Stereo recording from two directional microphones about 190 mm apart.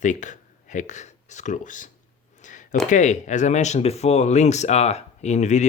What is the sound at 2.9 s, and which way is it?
Speech, 40° left (ahead or behind).